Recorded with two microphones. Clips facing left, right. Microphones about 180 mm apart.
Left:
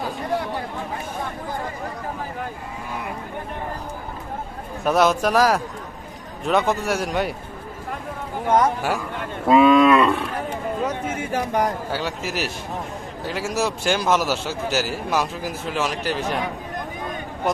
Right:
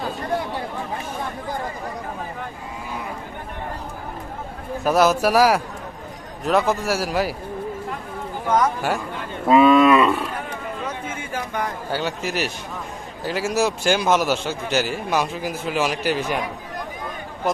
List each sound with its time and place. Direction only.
4.8 s a man's voice: centre (ahead or behind)
8.4 s speech: 30° left (ahead or behind)
9.5 s a man's voice: centre (ahead or behind)
10.8 s speech: 40° left (ahead or behind)
11.9 s a man's voice: centre (ahead or behind)
17.5 s speech: centre (ahead or behind)